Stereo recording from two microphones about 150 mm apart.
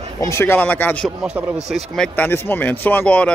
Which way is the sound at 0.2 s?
20° left (ahead or behind).